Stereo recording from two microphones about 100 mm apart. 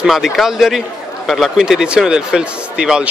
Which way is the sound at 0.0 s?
5° right (ahead or behind).